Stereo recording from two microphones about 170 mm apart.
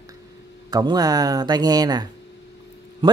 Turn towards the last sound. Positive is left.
turn(degrees=-25)  # may be behind; listen again after turning